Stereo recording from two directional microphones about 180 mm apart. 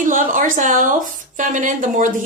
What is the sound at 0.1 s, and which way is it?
A woman's voice, 50° right (ahead or behind).